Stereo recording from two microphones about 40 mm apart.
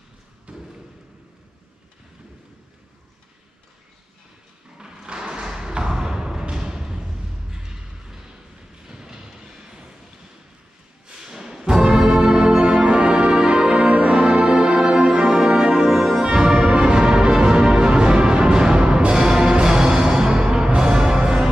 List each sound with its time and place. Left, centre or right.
0.5 s thump: right
4.7 s a sound: centre
8.8 s vehicle: centre
11.1 s music: centre